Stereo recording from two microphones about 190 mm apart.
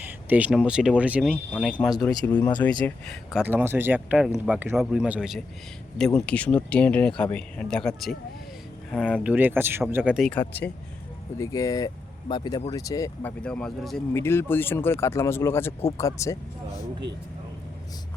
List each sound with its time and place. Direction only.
0.0 s speech: 10° right (ahead or behind)
1.5 s speech: 5° left (ahead or behind)
3.4 s speech: 10° right (ahead or behind)
6.2 s speech: 5° left (ahead or behind)
13.4 s speech: 5° left (ahead or behind)